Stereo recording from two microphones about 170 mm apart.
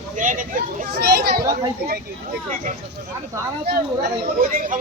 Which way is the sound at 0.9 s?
70° right (ahead or behind).